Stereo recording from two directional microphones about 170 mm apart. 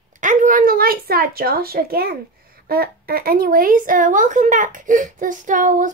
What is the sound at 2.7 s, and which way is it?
A woman's voice, 60° right (ahead or behind).